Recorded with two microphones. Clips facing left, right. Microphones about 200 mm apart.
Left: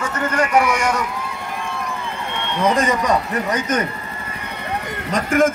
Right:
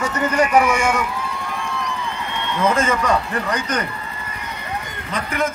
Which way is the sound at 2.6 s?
15° left (ahead or behind).